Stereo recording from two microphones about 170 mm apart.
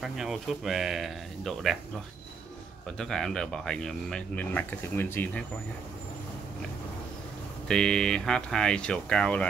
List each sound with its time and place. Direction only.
0.0 s speech: centre (ahead or behind)
3.0 s speech: 5° left (ahead or behind)
7.6 s speech: 5° left (ahead or behind)